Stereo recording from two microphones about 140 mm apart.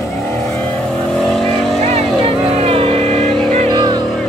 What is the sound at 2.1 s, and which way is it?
Vehicle, 45° right (ahead or behind).